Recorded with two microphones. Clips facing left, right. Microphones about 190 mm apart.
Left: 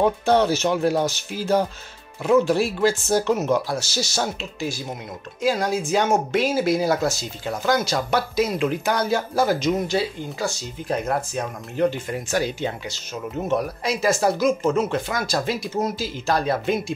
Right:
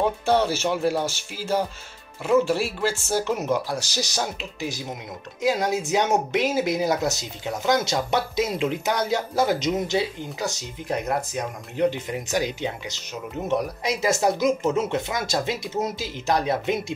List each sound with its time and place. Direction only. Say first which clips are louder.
0.2 s speech: left 3 dB; 10° right (ahead or behind)
2.2 s speech: left 2 dB; 5° right (ahead or behind)